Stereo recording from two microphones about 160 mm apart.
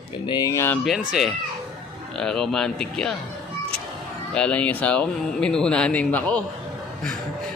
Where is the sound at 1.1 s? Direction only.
Centre (ahead or behind).